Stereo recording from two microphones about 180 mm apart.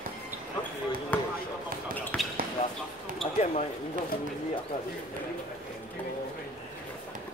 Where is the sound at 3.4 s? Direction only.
35° left (ahead or behind).